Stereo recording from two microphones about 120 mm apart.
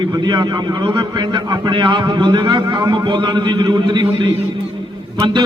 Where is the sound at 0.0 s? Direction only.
35° right (ahead or behind).